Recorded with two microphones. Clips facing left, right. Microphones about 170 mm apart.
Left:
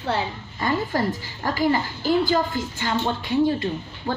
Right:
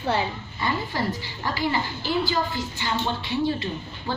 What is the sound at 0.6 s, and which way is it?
A woman's voice, 45° left (ahead or behind).